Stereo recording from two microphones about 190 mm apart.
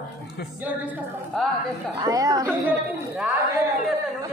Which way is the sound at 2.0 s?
20° right (ahead or behind).